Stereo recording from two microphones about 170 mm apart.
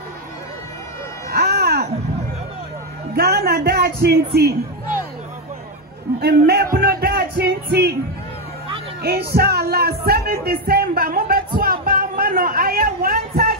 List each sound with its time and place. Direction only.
1.3 s baby cry: 70° right (ahead or behind)
3.2 s a sound: 65° right (ahead or behind)
6.2 s music: 75° right (ahead or behind)
9.0 s music: 65° right (ahead or behind)